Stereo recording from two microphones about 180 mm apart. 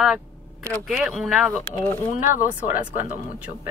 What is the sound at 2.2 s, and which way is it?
Speech, 45° left (ahead or behind).